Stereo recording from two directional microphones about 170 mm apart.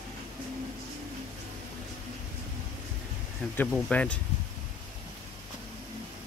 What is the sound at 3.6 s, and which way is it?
Speech, 5° left (ahead or behind).